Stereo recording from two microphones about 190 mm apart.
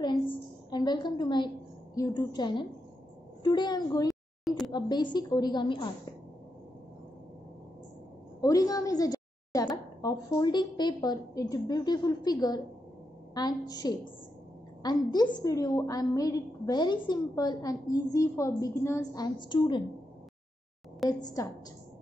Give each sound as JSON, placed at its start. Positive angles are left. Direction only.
{"t": 0.0, "sound": "a sound", "side_deg": 25}
{"t": 2.0, "sound": "a woman's voice", "side_deg": 20}
{"t": 4.1, "sound": "a sound", "side_deg": 0}
{"t": 4.7, "sound": "a woman's voice", "side_deg": 20}
{"t": 8.4, "sound": "a woman's voice", "side_deg": 20}
{"t": 21.1, "sound": "a woman's voice", "side_deg": 20}